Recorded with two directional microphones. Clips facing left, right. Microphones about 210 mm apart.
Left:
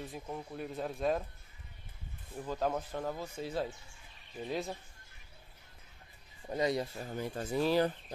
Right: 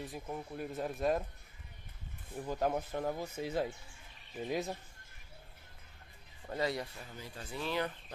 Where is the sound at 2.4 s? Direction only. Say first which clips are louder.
Even; 10° right (ahead or behind).